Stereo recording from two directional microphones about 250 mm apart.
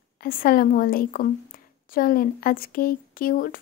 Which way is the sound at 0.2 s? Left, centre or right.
Left.